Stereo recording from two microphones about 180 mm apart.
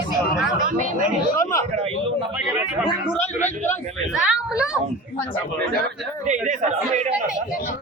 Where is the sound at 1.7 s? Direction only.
35° right (ahead or behind).